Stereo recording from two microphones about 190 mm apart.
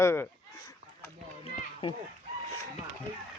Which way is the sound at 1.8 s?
30° left (ahead or behind).